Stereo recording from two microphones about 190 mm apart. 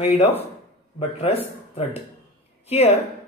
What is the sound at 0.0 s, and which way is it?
Speech, 30° left (ahead or behind).